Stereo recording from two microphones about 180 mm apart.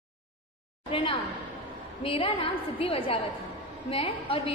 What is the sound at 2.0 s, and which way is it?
A woman's voice, 30° left (ahead or behind).